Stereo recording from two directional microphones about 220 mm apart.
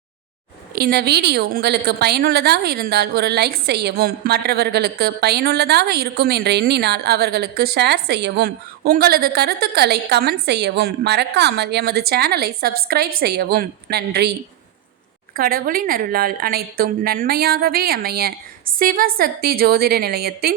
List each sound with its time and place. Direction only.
0.8 s a woman's voice: 45° right (ahead or behind)
15.4 s a woman's voice: 40° right (ahead or behind)